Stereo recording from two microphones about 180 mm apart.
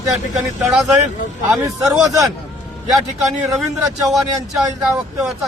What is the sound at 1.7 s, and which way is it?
Speech, 20° right (ahead or behind).